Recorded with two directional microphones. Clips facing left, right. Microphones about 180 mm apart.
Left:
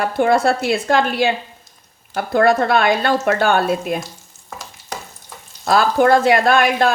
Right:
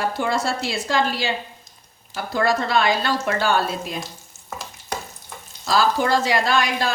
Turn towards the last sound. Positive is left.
turn(degrees=55)  # may be behind; listen again after turning